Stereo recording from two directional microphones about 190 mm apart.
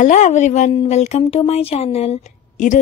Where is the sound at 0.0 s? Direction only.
40° left (ahead or behind).